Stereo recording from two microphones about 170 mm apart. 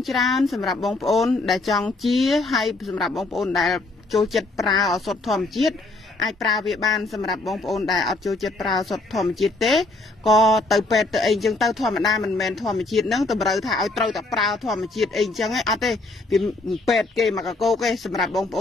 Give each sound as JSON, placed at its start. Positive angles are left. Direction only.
{"t": 0.0, "sound": "speech", "side_deg": 0}